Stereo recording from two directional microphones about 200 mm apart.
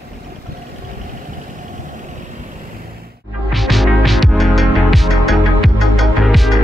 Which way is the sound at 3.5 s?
Centre (ahead or behind).